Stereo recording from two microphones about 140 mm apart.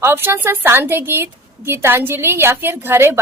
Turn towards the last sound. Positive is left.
turn(degrees=-15)  # may be behind; listen again after turning